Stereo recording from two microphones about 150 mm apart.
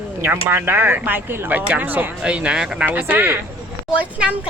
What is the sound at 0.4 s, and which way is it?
Speech, 15° right (ahead or behind).